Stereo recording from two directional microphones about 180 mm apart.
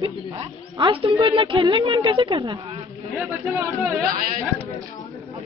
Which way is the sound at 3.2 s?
10° right (ahead or behind).